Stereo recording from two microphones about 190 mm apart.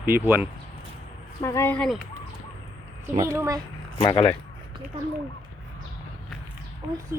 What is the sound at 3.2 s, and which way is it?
Speech, 15° right (ahead or behind).